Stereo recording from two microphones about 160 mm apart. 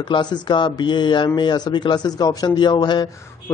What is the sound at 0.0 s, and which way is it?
Speech, 25° left (ahead or behind).